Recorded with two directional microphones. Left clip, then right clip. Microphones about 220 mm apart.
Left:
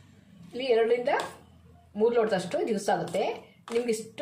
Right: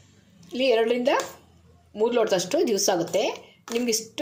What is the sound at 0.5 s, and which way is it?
A woman's voice, 35° right (ahead or behind).